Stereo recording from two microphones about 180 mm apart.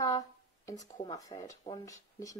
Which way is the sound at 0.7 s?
20° left (ahead or behind).